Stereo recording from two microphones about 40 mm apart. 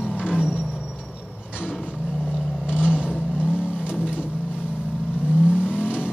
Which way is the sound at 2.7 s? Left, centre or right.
Right.